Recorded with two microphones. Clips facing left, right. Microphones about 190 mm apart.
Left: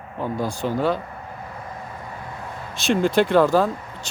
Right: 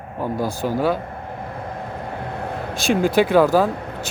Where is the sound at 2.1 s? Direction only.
65° right (ahead or behind).